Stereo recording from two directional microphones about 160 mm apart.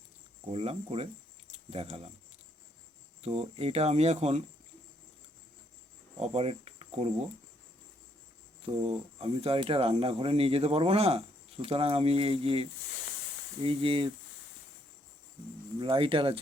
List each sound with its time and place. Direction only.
0.5 s speech: 40° right (ahead or behind)
1.5 s keys jangling: 40° right (ahead or behind)
3.2 s speech: 40° right (ahead or behind)
6.1 s cricket: 40° right (ahead or behind)
8.8 s speech: 35° right (ahead or behind)
15.8 s speech: 35° right (ahead or behind)